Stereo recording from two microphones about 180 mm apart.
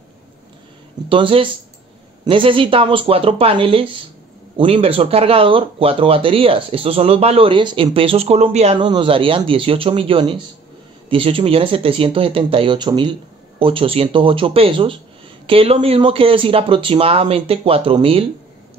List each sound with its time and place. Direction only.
1.0 s speech: 30° right (ahead or behind)
8.7 s speech: 25° right (ahead or behind)